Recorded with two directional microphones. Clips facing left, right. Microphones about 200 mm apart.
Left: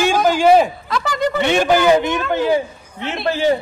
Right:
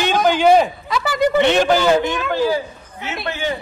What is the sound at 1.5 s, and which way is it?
Speech, 15° left (ahead or behind).